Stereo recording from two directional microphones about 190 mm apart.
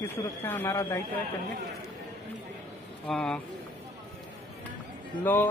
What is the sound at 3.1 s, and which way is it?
Speech, 5° left (ahead or behind).